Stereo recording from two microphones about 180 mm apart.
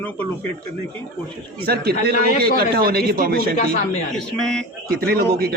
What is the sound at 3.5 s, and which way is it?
Speech, 45° left (ahead or behind).